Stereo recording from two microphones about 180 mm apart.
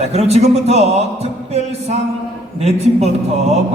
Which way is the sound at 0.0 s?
35° right (ahead or behind).